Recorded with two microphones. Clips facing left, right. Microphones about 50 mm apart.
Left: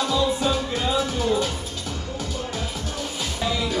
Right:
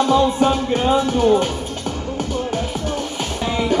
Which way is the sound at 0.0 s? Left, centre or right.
Right.